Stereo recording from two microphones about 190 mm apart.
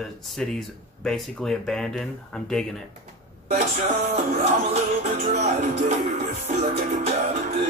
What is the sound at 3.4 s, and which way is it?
Music, 35° right (ahead or behind).